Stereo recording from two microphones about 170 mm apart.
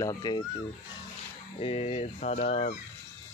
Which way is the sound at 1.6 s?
35° left (ahead or behind).